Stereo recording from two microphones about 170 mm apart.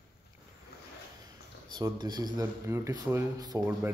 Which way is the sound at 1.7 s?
25° right (ahead or behind).